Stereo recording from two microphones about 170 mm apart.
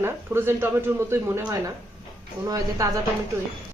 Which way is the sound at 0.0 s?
15° right (ahead or behind).